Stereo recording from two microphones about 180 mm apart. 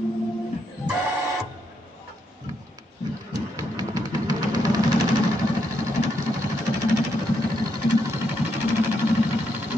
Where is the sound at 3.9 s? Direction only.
20° right (ahead or behind).